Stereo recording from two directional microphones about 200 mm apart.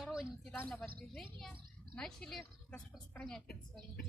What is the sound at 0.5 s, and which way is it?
A woman's voice, 10° left (ahead or behind).